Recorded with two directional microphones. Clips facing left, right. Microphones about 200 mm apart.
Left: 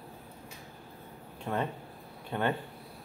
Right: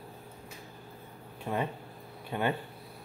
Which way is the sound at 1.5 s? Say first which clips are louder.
Even; 10° right (ahead or behind).